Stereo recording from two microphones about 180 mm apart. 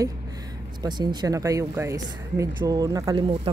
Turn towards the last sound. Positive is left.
turn(degrees=-20)  # may be behind; listen again after turning